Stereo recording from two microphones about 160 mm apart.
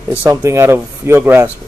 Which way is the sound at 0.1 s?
20° right (ahead or behind).